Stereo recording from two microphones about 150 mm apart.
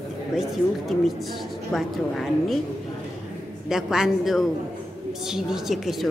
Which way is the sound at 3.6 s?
5° right (ahead or behind).